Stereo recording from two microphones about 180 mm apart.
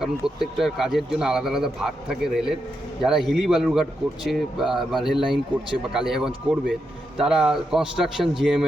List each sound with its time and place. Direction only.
0.0 s speech: centre (ahead or behind)